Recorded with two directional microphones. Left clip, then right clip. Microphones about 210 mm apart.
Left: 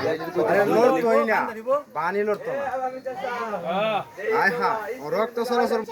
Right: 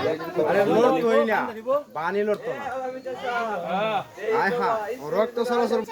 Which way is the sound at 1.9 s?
5° right (ahead or behind).